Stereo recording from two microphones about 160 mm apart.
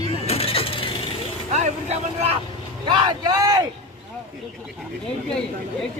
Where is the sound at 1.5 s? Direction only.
45° right (ahead or behind).